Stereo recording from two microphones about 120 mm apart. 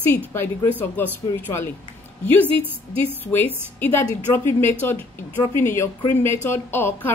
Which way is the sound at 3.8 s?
20° left (ahead or behind).